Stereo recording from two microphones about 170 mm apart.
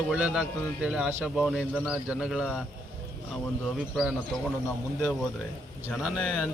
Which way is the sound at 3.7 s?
Centre (ahead or behind).